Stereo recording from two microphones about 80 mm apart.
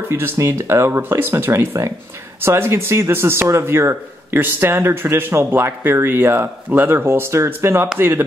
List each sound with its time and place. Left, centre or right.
0.1 s speech: right